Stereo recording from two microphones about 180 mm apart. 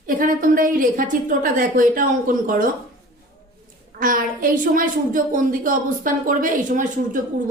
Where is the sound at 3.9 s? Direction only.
50° right (ahead or behind).